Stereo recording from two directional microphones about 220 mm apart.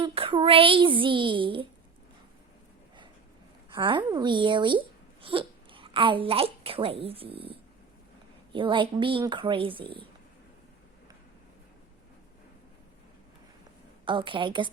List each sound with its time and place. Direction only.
0.0 s a sound: 25° right (ahead or behind)
3.8 s a child's voice: 20° right (ahead or behind)
8.5 s speech: 20° right (ahead or behind)
14.0 s speech: 20° right (ahead or behind)